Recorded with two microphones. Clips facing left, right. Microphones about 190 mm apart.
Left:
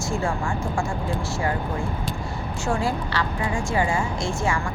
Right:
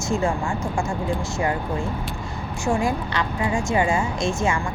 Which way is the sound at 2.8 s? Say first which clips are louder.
Right 2 dB; 20° right (ahead or behind).